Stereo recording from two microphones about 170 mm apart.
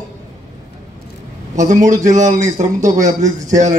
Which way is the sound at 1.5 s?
45° right (ahead or behind).